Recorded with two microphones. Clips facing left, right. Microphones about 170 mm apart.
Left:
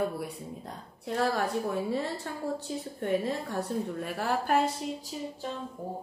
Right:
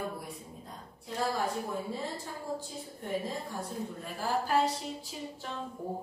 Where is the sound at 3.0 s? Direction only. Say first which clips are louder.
Left 5 dB; 65° left (ahead or behind).